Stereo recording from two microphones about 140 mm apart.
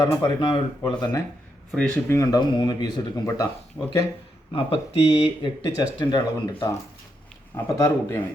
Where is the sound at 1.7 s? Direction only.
10° left (ahead or behind); by 3.5 s 25° left (ahead or behind).